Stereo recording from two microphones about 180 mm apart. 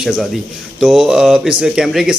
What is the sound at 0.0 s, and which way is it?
Speech, centre (ahead or behind).